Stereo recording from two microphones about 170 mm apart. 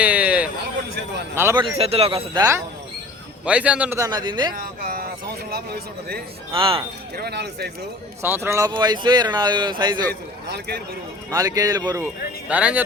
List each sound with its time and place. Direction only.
0.0 s a sound: 10° right (ahead or behind)
1.4 s a man's voice: 15° right (ahead or behind)
1.8 s speech: 35° right (ahead or behind); by 2.6 s 20° right (ahead or behind)
3.4 s a man's voice: 5° right (ahead or behind); by 4.5 s 25° right (ahead or behind)
4.5 s a man's voice: 60° right (ahead or behind)
6.5 s speech: 30° right (ahead or behind)
7.2 s speech: 75° right (ahead or behind)
8.2 s speech: 15° right (ahead or behind)
10.1 s speech: 65° right (ahead or behind)
11.3 s speech: 20° right (ahead or behind)
12.5 s a man's voice: 10° right (ahead or behind)